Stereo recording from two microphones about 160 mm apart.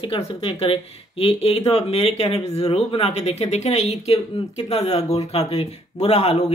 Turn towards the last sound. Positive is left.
turn(degrees=40)  # may be behind; listen again after turning